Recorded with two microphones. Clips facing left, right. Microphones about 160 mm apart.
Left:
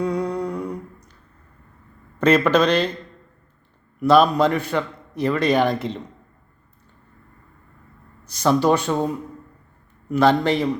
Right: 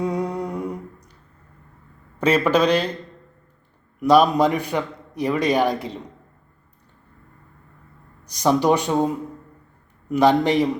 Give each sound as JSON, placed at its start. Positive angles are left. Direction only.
{"t": 0.0, "sound": "humming", "side_deg": -20}
{"t": 2.1, "sound": "a man's voice", "side_deg": -10}
{"t": 4.0, "sound": "a man's voice", "side_deg": -15}
{"t": 8.2, "sound": "a man's voice", "side_deg": -15}